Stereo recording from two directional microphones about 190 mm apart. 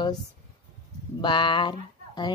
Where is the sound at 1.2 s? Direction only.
25° left (ahead or behind).